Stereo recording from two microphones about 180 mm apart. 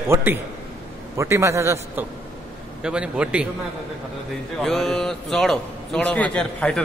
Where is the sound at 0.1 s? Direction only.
10° right (ahead or behind).